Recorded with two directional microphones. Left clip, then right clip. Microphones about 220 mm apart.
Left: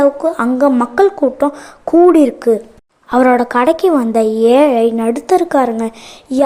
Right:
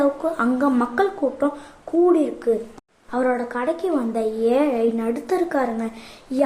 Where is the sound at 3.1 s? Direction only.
40° left (ahead or behind).